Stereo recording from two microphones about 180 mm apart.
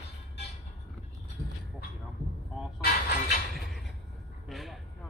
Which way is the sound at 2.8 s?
60° left (ahead or behind).